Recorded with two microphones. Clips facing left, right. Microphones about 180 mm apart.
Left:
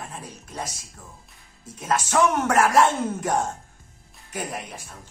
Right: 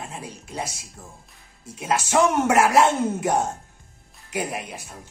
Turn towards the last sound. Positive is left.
turn(degrees=-10)  # may be behind; listen again after turning